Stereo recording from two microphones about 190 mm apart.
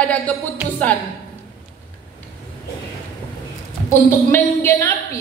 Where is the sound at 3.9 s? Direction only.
15° left (ahead or behind).